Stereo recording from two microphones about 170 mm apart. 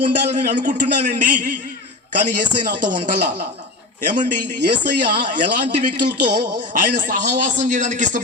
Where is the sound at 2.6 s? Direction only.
50° right (ahead or behind).